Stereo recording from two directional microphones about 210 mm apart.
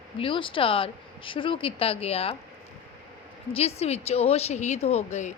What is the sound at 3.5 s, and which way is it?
Speech, 30° left (ahead or behind).